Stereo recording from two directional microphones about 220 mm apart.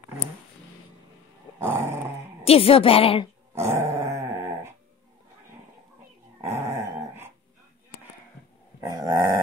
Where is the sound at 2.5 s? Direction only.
25° left (ahead or behind).